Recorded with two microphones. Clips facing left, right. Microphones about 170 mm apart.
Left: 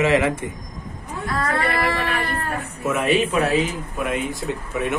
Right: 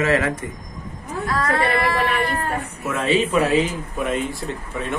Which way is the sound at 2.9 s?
15° left (ahead or behind).